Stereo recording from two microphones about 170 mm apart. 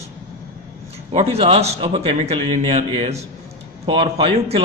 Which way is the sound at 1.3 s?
35° right (ahead or behind).